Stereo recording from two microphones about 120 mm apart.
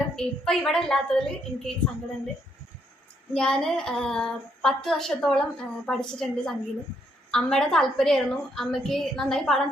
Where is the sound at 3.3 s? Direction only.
5° left (ahead or behind).